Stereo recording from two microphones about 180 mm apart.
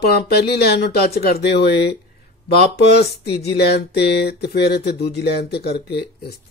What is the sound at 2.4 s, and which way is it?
Speech, 65° left (ahead or behind).